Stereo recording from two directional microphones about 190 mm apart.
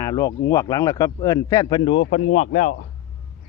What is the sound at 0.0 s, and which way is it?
A man's voice, 20° left (ahead or behind).